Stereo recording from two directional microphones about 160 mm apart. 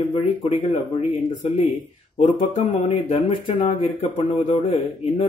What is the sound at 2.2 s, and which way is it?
Speech, 45° left (ahead or behind).